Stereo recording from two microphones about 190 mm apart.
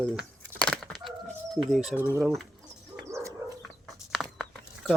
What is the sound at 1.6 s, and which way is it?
Speech, centre (ahead or behind).